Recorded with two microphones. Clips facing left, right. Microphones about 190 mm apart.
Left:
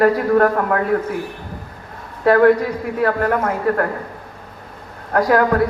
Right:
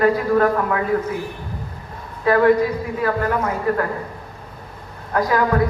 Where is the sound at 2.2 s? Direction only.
65° left (ahead or behind).